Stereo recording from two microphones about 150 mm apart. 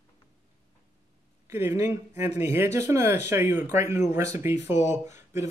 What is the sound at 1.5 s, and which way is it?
Speech, 15° right (ahead or behind).